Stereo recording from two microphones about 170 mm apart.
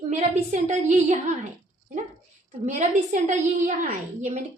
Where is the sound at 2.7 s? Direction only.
45° right (ahead or behind).